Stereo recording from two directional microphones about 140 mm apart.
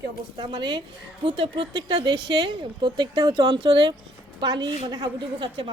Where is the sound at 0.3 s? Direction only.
35° right (ahead or behind).